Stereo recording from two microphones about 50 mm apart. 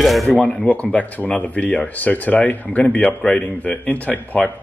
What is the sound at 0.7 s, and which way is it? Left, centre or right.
Speech, left.